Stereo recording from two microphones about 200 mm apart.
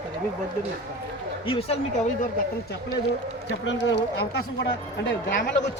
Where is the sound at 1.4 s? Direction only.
30° left (ahead or behind).